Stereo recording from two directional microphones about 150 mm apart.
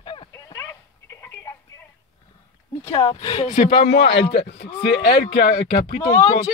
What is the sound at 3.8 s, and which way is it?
Speech, 90° left.